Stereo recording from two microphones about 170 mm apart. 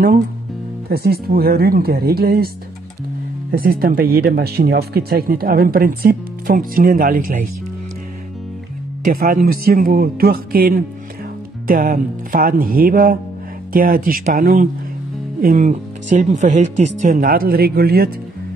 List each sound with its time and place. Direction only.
0.8 s speech: 65° right (ahead or behind)
3.5 s speech: 60° right (ahead or behind)
9.0 s speech: 60° right (ahead or behind)